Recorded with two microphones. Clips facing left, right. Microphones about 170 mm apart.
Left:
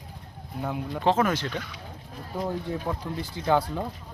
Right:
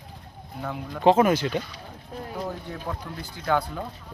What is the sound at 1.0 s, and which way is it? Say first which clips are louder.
Speech: right 5 dB; 15° right (ahead or behind).